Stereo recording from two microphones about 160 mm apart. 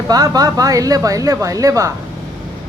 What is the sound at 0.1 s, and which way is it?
Speech, 25° right (ahead or behind).